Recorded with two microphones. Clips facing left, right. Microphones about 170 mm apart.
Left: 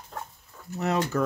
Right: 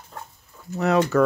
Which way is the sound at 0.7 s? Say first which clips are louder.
Right 6 dB; 90° right.